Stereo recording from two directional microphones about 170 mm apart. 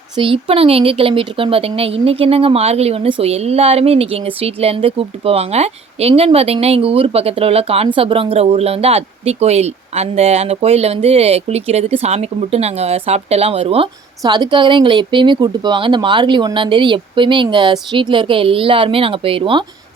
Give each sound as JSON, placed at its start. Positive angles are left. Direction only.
{"t": 0.2, "sound": "speech", "side_deg": -35}